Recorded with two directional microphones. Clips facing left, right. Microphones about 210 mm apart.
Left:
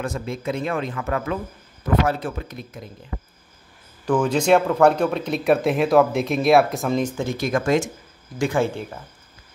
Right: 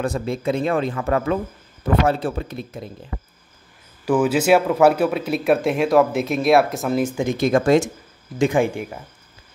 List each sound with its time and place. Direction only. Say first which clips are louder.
0.0 s speech: right 4 dB; 35° right (ahead or behind)
4.0 s speech: right 2 dB; 5° right (ahead or behind); by 7.8 s 30° right (ahead or behind)
8.4 s speech: right 3 dB; 15° right (ahead or behind)